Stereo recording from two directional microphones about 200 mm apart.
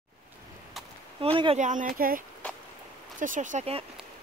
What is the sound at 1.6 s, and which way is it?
Speech, 40° right (ahead or behind).